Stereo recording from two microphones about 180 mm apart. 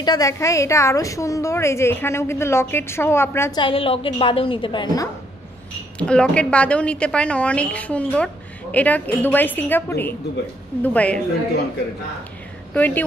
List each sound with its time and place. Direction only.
0.0 s a woman's voice: 20° left (ahead or behind)
3.5 s a woman's voice: 30° left (ahead or behind)
5.9 s a woman's voice: 5° left (ahead or behind)
12.7 s a woman's voice: 10° left (ahead or behind)